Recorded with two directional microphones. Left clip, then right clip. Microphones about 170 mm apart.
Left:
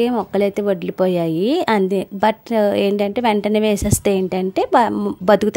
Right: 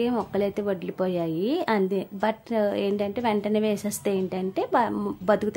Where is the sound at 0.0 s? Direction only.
45° left (ahead or behind).